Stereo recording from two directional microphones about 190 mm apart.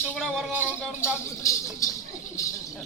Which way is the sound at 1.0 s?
15° left (ahead or behind).